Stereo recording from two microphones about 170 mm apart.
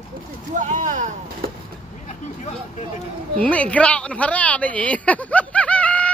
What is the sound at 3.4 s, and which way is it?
Speech, 10° left (ahead or behind).